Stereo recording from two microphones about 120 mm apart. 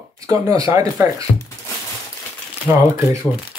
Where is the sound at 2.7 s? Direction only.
20° right (ahead or behind).